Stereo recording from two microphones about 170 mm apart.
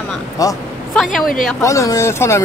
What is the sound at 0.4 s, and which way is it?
Speech, 20° left (ahead or behind).